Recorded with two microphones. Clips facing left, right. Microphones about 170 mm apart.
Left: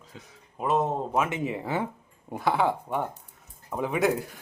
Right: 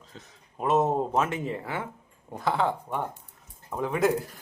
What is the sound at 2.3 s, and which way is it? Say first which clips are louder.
Speech: left 2 dB; 5° left (ahead or behind).